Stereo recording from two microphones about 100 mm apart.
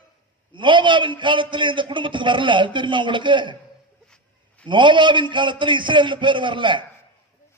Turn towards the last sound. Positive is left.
turn(degrees=-50)  # may be behind; listen again after turning